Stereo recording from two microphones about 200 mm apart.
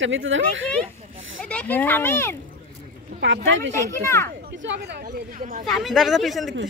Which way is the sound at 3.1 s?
65° right (ahead or behind).